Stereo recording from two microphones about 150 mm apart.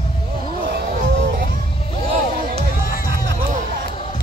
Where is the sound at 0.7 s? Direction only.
75° right (ahead or behind).